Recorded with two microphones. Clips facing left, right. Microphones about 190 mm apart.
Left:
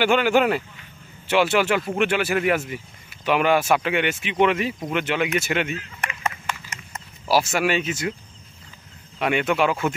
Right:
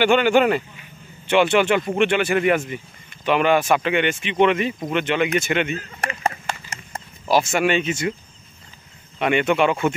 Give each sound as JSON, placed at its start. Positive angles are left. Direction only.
{"t": 0.0, "sound": "speech", "side_deg": 5}
{"t": 5.8, "sound": "chop", "side_deg": -35}
{"t": 7.2, "sound": "speech", "side_deg": 5}
{"t": 9.2, "sound": "speech", "side_deg": 0}